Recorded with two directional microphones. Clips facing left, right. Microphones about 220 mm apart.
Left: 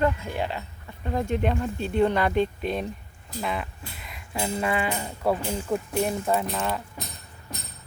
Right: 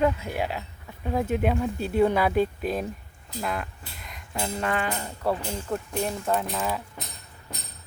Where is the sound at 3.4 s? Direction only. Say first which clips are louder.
Left 1 dB; centre (ahead or behind).